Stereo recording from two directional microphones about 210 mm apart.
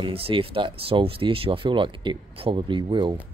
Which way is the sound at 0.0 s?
25° right (ahead or behind).